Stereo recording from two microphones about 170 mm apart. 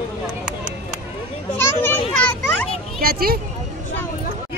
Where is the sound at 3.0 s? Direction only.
65° right (ahead or behind).